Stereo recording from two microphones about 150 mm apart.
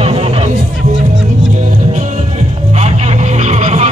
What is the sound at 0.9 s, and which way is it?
Music, 5° right (ahead or behind).